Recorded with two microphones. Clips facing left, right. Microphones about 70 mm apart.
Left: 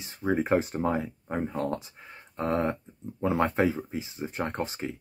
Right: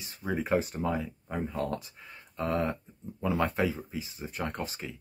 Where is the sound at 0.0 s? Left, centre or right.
Left.